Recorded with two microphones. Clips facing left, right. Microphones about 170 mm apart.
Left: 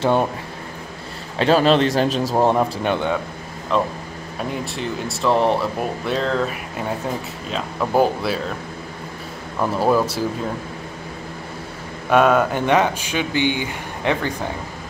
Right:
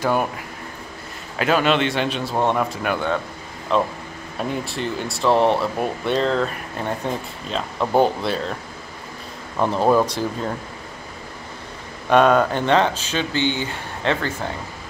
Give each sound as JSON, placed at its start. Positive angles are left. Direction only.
{"t": 0.0, "sound": "speech", "side_deg": 25}
{"t": 1.4, "sound": "a man's voice", "side_deg": 35}
{"t": 3.7, "sound": "speech", "side_deg": 0}
{"t": 9.6, "sound": "speech", "side_deg": 0}
{"t": 12.1, "sound": "speech", "side_deg": 5}